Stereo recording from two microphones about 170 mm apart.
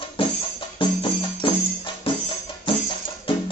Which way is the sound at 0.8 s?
30° left (ahead or behind).